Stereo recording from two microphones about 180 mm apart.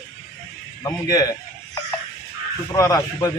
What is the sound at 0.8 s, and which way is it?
Speech, 20° left (ahead or behind).